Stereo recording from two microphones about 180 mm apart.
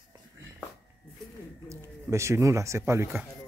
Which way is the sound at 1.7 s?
15° right (ahead or behind).